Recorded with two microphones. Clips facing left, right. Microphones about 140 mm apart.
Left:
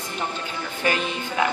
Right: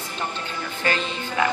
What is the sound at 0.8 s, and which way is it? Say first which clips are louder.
Speech: left 1 dB; 10° left (ahead or behind).